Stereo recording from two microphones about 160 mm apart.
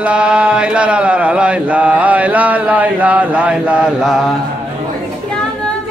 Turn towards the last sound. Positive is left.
turn(degrees=-5)  # may be behind; listen again after turning